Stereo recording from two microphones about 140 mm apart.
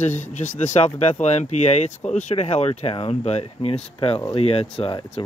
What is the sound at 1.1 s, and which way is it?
Speech, 55° left (ahead or behind).